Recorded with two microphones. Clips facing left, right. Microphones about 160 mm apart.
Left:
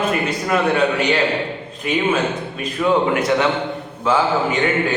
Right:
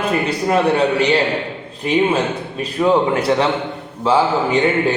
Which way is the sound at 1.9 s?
30° right (ahead or behind).